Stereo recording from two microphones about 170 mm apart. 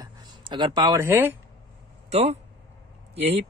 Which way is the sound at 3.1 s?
40° right (ahead or behind).